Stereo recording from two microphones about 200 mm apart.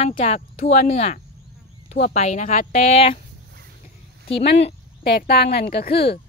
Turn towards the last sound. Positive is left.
turn(degrees=50)  # may be behind; listen again after turning